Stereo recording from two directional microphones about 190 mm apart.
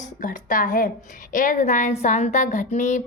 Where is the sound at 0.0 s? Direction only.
45° left (ahead or behind).